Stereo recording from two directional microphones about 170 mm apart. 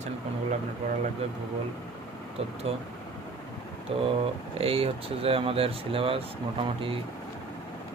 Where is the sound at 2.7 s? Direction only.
35° right (ahead or behind).